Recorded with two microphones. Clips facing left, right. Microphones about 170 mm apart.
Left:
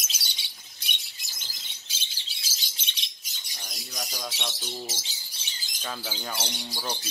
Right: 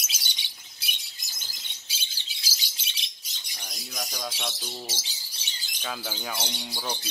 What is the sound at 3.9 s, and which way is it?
Bird, centre (ahead or behind).